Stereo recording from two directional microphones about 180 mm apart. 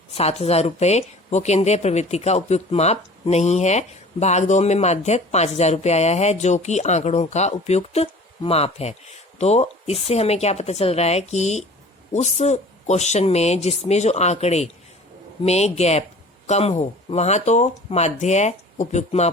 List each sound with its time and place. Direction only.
0.1 s speech: 35° left (ahead or behind)